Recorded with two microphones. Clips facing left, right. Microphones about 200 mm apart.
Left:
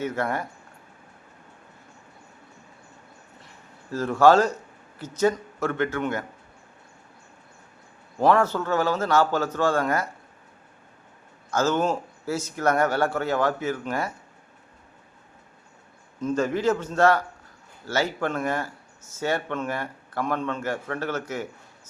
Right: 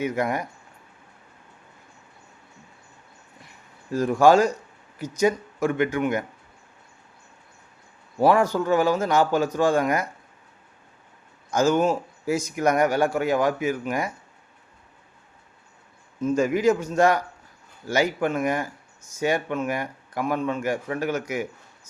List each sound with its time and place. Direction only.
0.0 s speech: 15° right (ahead or behind)
3.9 s speech: 15° right (ahead or behind)
8.2 s speech: 10° right (ahead or behind)
11.5 s speech: 15° right (ahead or behind)
16.2 s speech: 10° right (ahead or behind)